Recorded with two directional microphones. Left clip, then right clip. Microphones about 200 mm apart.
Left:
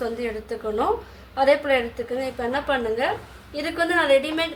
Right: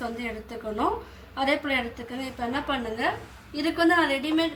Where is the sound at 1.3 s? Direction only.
20° left (ahead or behind).